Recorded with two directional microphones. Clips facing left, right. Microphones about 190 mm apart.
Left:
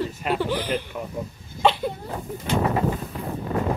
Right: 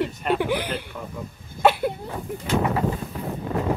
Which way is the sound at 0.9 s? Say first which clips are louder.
Left 3 dB; 20° left (ahead or behind).